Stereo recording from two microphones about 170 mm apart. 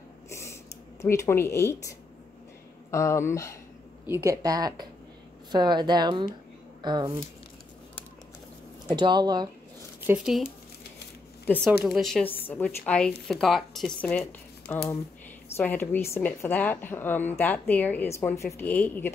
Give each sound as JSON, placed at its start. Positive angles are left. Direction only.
{"t": 0.3, "sound": "a sound", "side_deg": 15}
{"t": 1.0, "sound": "a woman's voice", "side_deg": 15}
{"t": 4.1, "sound": "a woman's voice", "side_deg": -15}
{"t": 8.9, "sound": "a woman's voice", "side_deg": -25}
{"t": 10.1, "sound": "speech", "side_deg": 0}
{"t": 11.4, "sound": "speech", "side_deg": 10}
{"t": 11.8, "sound": "a woman's voice", "side_deg": 0}